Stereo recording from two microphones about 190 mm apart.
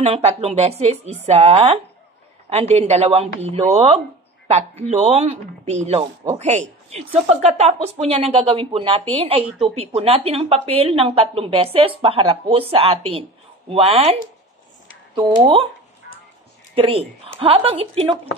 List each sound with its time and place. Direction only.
0.0 s a woman's voice: 30° right (ahead or behind)
15.1 s a woman's voice: 30° right (ahead or behind)
16.7 s a woman's voice: 30° right (ahead or behind)